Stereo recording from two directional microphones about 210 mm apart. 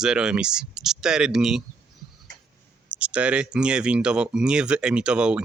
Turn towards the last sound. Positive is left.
turn(degrees=-5)  # may be behind; listen again after turning